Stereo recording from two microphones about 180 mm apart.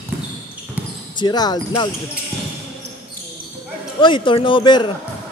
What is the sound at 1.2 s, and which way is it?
Speech, 25° left (ahead or behind).